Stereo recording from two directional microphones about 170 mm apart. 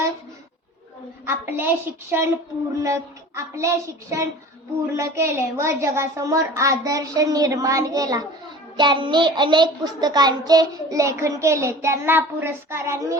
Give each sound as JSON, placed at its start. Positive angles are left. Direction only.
{"t": 1.2, "sound": "child singing", "side_deg": -15}
{"t": 4.9, "sound": "a child's voice", "side_deg": -15}